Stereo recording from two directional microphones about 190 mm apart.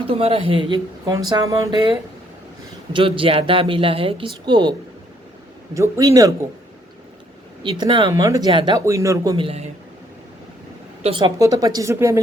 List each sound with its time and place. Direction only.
0.0 s speech: 30° right (ahead or behind)
2.9 s speech: 30° right (ahead or behind)
5.7 s speech: 15° right (ahead or behind)
7.6 s speech: 25° right (ahead or behind)
11.0 s speech: 25° right (ahead or behind)